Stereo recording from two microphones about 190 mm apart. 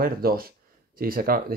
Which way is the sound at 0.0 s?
50° right (ahead or behind).